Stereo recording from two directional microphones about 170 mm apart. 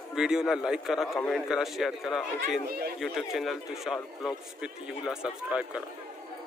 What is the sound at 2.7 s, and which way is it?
Speech, 65° right (ahead or behind).